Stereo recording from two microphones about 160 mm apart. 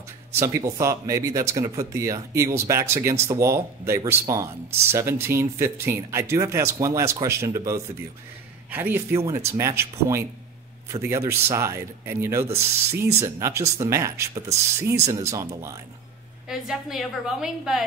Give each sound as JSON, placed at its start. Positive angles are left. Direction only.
{"t": 0.3, "sound": "speech", "side_deg": -15}
{"t": 16.4, "sound": "a woman's voice", "side_deg": -5}